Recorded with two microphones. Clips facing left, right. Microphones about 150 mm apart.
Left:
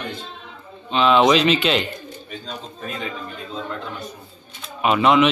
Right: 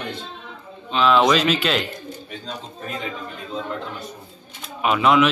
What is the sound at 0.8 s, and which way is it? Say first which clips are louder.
Speech: left 1 dB; centre (ahead or behind).